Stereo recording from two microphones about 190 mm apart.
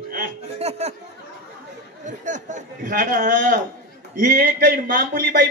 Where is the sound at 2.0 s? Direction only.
40° right (ahead or behind).